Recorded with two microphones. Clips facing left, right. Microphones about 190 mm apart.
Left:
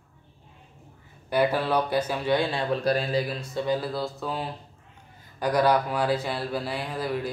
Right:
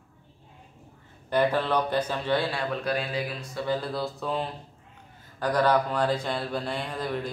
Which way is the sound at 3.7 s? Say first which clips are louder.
Left 1 dB; centre (ahead or behind).